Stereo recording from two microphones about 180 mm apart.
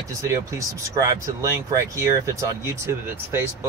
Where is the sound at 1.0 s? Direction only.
15° right (ahead or behind).